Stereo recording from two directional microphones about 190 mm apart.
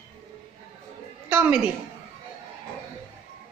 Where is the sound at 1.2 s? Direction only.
10° right (ahead or behind).